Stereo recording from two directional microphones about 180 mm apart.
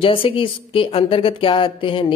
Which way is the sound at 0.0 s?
30° left (ahead or behind).